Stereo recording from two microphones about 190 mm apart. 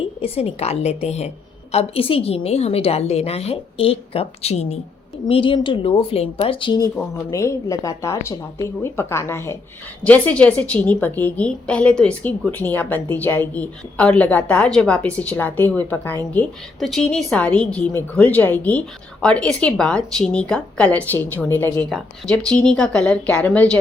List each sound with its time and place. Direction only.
0.2 s a woman's voice: 30° left (ahead or behind)
6.9 s a woman's voice: 15° left (ahead or behind)